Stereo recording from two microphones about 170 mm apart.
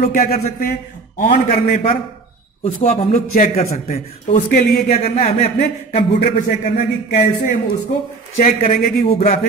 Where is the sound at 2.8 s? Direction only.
35° left (ahead or behind).